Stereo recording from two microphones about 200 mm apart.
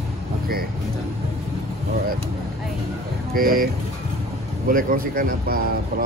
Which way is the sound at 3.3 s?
45° right (ahead or behind).